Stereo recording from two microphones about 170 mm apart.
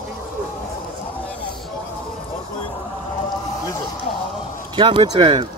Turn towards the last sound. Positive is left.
turn(degrees=-30)  # may be behind; listen again after turning